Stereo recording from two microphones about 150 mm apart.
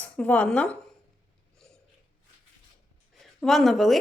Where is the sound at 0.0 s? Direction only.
10° left (ahead or behind).